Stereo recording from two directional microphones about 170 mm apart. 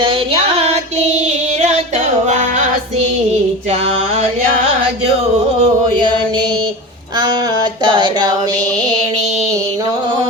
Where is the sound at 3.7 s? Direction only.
35° right (ahead or behind).